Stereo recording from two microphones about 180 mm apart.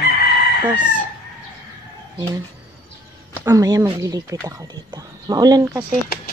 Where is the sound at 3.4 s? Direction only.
20° right (ahead or behind).